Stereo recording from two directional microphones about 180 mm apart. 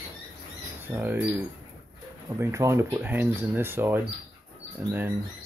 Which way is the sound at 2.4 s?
15° right (ahead or behind).